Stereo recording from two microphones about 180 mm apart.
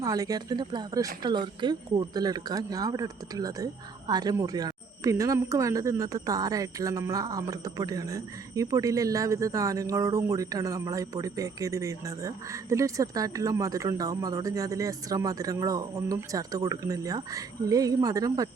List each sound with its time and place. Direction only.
0.0 s speech: 20° right (ahead or behind)